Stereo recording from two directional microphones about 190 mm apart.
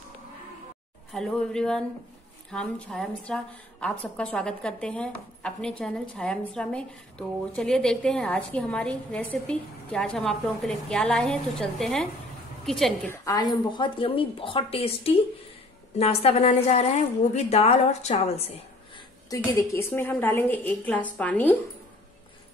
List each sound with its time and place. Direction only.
1.1 s a woman's voice: 5° left (ahead or behind)
13.1 s a woman's voice: 20° left (ahead or behind); by 18.5 s 35° left (ahead or behind)
18.9 s a woman's voice: 15° left (ahead or behind)